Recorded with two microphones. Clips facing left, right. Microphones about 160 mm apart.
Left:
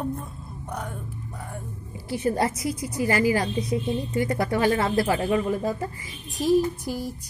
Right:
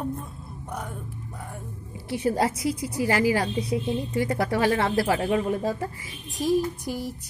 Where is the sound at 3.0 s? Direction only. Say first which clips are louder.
Even; 90° right.